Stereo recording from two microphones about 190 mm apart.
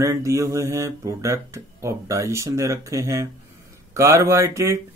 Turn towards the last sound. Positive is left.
turn(degrees=-15)  # may be behind; listen again after turning